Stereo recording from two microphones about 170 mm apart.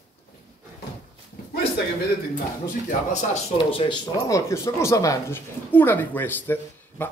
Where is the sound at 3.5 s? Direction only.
30° left (ahead or behind).